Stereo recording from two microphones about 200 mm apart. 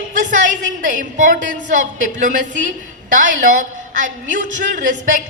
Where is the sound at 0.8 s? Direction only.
40° right (ahead or behind).